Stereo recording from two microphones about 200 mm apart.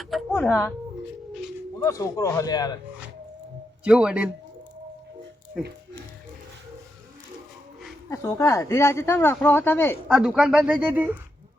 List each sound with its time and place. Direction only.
0.0 s speech: centre (ahead or behind)
1.8 s speech: 15° left (ahead or behind)
3.8 s speech: 5° right (ahead or behind)
8.1 s speech: 15° left (ahead or behind)
10.1 s speech: 5° right (ahead or behind)